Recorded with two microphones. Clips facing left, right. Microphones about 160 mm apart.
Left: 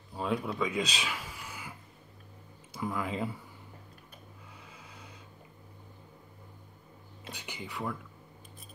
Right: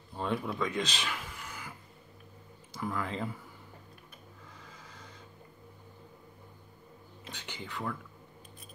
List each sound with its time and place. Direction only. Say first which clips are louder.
0.1 s speech: left 1 dB; centre (ahead or behind)
2.7 s speech: left 1 dB; 10° left (ahead or behind)
4.6 s a sound: even; 10° left (ahead or behind)
7.2 s speech: left 1 dB; 10° left (ahead or behind)